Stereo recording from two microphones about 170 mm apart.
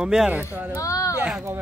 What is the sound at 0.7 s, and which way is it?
Speech, 20° left (ahead or behind).